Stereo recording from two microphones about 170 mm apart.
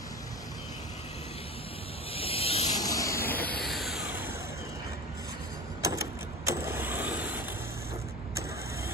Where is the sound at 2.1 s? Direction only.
35° left (ahead or behind).